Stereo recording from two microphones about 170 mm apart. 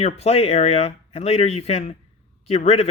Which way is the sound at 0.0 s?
40° left (ahead or behind).